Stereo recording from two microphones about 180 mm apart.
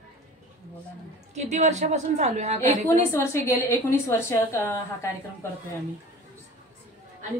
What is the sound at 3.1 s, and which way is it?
A woman's voice, 15° left (ahead or behind).